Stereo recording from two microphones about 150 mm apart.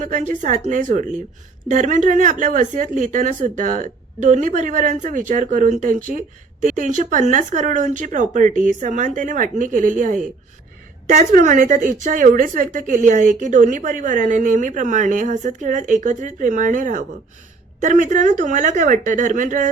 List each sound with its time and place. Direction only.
0.0 s a woman's voice: 55° right (ahead or behind)
11.2 s a woman's voice: 60° right (ahead or behind)